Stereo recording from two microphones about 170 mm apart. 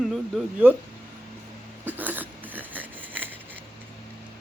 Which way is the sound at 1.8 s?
10° right (ahead or behind).